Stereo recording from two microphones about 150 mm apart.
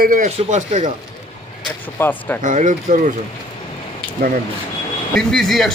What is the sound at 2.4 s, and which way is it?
Speech, 60° right (ahead or behind).